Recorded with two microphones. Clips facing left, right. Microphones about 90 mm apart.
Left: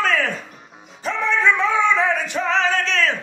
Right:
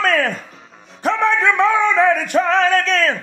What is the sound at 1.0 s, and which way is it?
Singing, 65° right (ahead or behind).